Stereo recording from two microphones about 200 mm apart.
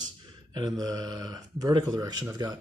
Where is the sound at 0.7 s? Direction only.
20° right (ahead or behind).